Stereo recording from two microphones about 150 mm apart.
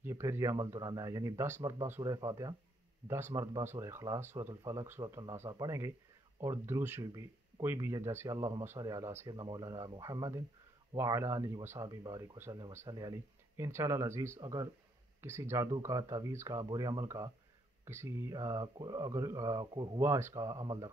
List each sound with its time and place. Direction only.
0.0 s speech: 20° right (ahead or behind)
9.3 s speech: 30° right (ahead or behind)
20.0 s speech: 15° right (ahead or behind)